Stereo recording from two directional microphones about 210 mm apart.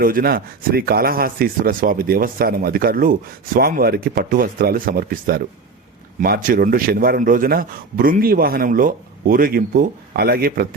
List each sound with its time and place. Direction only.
0.0 s speech: 45° right (ahead or behind)